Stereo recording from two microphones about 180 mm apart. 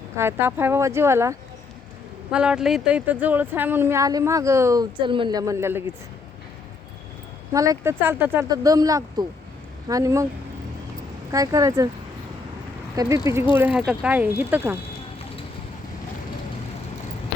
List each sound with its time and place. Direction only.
0.2 s speech: 15° right (ahead or behind)
2.3 s speech: 5° right (ahead or behind)
7.5 s speech: 20° right (ahead or behind)
11.3 s speech: 20° right (ahead or behind)
13.0 s speech: 20° right (ahead or behind)
13.6 s speech: 5° right (ahead or behind)